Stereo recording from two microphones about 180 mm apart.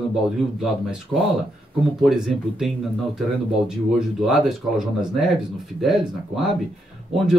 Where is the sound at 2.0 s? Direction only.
Centre (ahead or behind).